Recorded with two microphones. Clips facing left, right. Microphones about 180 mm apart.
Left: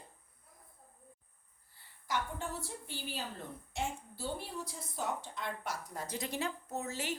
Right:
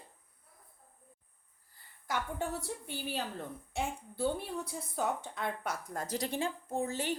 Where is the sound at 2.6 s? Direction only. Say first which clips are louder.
Right 4 dB; 65° right (ahead or behind); by 7.1 s 30° right (ahead or behind).